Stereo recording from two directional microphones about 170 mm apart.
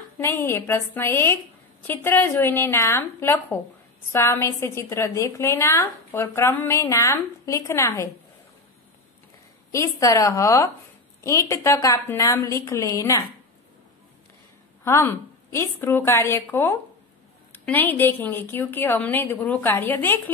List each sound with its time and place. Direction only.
0.2 s a woman's voice: 15° left (ahead or behind)
9.7 s a woman's voice: 20° left (ahead or behind)
14.9 s a woman's voice: 15° left (ahead or behind)